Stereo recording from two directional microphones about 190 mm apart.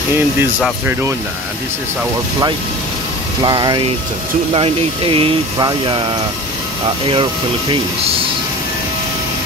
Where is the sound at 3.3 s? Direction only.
20° right (ahead or behind).